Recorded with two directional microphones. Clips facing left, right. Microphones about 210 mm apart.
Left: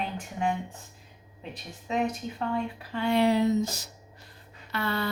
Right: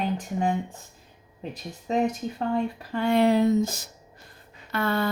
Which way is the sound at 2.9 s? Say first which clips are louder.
Right 3 dB; 45° right (ahead or behind).